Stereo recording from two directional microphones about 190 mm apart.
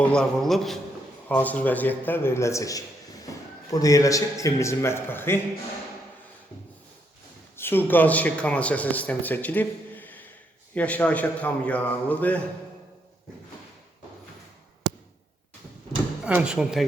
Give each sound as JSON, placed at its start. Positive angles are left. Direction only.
{"t": 0.0, "sound": "a man's voice", "side_deg": 5}
{"t": 7.5, "sound": "a man's voice", "side_deg": 10}
{"t": 16.2, "sound": "a man's voice", "side_deg": -5}